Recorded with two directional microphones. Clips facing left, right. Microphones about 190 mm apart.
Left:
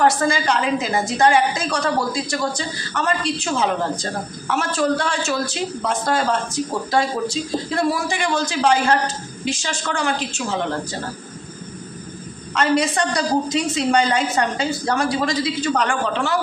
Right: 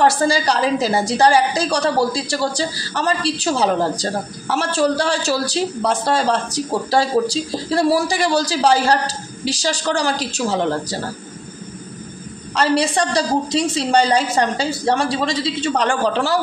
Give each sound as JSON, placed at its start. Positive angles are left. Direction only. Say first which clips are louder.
{"t": 0.0, "sound": "a woman's voice", "louder": "right 2 dB", "side_deg": -30}
{"t": 12.5, "sound": "a woman's voice", "louder": "right 1 dB", "side_deg": -30}